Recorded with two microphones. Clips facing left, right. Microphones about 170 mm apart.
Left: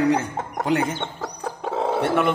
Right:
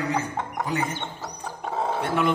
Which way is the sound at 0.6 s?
80° left.